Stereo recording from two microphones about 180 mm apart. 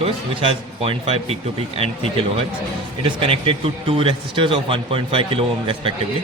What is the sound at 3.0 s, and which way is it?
Speech, 30° right (ahead or behind).